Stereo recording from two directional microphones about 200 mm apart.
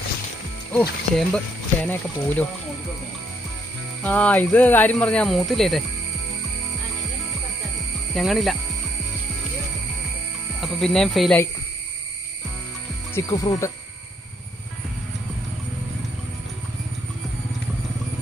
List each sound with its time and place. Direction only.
0.7 s speech: 5° left (ahead or behind)
4.0 s speech: 5° left (ahead or behind)
8.1 s speech: centre (ahead or behind)
10.6 s speech: centre (ahead or behind)
13.1 s speech: 20° left (ahead or behind)